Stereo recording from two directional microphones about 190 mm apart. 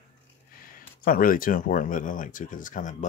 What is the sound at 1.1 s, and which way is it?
Speech, 50° left (ahead or behind).